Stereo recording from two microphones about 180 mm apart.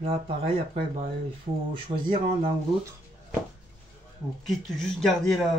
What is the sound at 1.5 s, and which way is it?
Speech, 35° right (ahead or behind).